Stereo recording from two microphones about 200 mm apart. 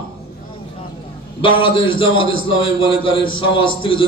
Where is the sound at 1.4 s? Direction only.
25° left (ahead or behind).